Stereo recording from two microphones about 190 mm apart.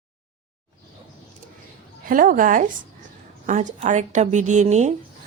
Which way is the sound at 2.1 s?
45° right (ahead or behind).